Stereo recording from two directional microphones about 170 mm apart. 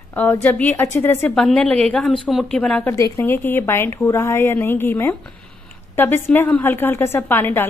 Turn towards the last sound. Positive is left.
turn(degrees=10)  # may be behind; listen again after turning